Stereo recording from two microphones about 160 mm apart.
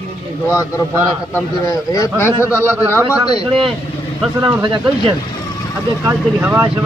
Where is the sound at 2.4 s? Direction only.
10° right (ahead or behind).